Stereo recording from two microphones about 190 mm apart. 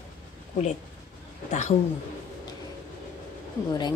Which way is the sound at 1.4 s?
40° left (ahead or behind).